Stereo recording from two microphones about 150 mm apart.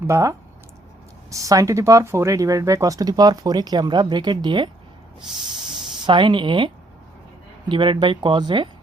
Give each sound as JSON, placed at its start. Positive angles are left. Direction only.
{"t": 0.1, "sound": "speech", "side_deg": -20}
{"t": 6.1, "sound": "speech", "side_deg": -30}
{"t": 7.7, "sound": "speech", "side_deg": -30}